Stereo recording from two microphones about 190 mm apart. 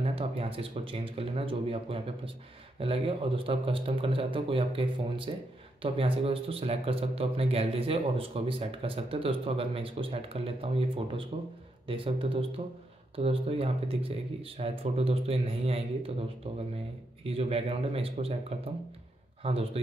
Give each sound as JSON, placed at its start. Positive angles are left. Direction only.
{"t": 0.0, "sound": "speech", "side_deg": -30}